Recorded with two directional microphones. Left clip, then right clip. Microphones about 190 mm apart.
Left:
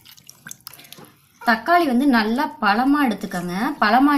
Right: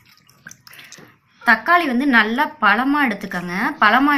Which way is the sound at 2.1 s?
35° left (ahead or behind).